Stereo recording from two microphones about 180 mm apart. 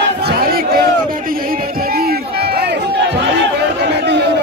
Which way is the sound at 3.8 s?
70° right (ahead or behind).